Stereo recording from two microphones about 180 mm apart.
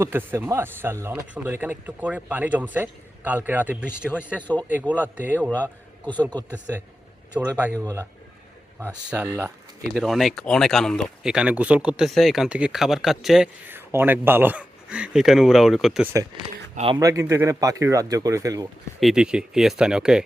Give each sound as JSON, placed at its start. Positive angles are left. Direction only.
{"t": 0.0, "sound": "speech", "side_deg": -10}
{"t": 7.3, "sound": "speech", "side_deg": -10}
{"t": 9.9, "sound": "speech", "side_deg": 0}
{"t": 16.7, "sound": "speech", "side_deg": -30}
{"t": 17.0, "sound": "speech", "side_deg": -20}
{"t": 18.9, "sound": "speech", "side_deg": 0}